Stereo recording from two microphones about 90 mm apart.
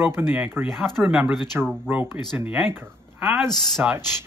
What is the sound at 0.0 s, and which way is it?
Speech, 25° right (ahead or behind).